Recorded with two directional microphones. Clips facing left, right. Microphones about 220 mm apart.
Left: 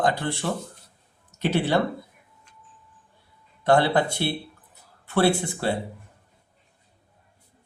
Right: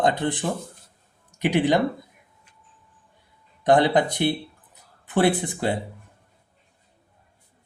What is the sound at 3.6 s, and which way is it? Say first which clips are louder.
Speech: right 2 dB; 15° right (ahead or behind).